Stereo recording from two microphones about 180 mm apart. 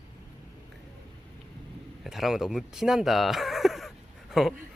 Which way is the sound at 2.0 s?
Centre (ahead or behind).